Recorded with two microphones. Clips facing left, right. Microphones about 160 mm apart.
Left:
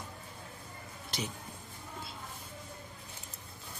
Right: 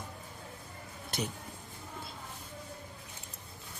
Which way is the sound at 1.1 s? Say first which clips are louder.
Right 2 dB; 55° right (ahead or behind).